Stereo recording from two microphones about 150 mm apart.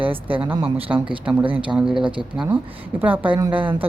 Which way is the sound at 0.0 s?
35° right (ahead or behind).